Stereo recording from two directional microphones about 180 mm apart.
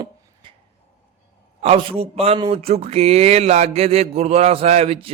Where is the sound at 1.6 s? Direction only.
30° right (ahead or behind).